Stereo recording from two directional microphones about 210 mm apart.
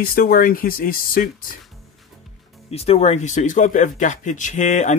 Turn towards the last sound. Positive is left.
turn(degrees=35)  # may be behind; listen again after turning